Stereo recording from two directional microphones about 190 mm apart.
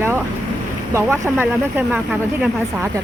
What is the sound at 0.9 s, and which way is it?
Speech, 10° right (ahead or behind).